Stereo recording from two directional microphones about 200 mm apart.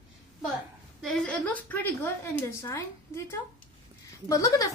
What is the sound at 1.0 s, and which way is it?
A woman's voice, 5° left (ahead or behind).